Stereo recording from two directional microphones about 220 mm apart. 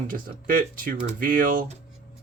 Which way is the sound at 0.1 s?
40° right (ahead or behind).